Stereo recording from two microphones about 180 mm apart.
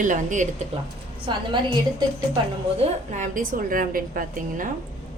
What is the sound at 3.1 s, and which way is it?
A woman's voice, 45° right (ahead or behind).